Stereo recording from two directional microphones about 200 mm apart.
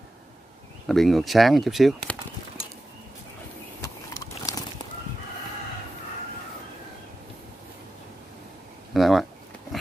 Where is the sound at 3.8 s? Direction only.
15° left (ahead or behind).